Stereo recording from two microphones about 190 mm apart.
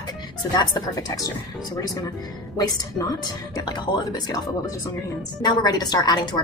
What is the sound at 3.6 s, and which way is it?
A woman's voice, 20° left (ahead or behind).